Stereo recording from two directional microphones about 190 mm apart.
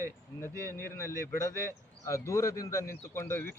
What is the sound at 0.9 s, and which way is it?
A man's voice, 15° left (ahead or behind).